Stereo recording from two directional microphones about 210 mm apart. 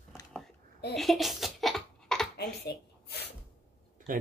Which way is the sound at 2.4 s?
50° left (ahead or behind).